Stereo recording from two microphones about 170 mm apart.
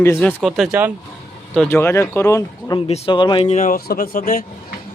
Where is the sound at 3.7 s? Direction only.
60° left (ahead or behind).